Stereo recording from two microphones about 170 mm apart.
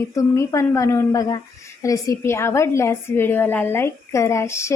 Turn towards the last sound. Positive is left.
turn(degrees=15)  # may be behind; listen again after turning